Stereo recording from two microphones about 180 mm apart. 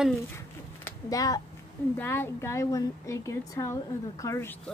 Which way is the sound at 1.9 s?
10° left (ahead or behind).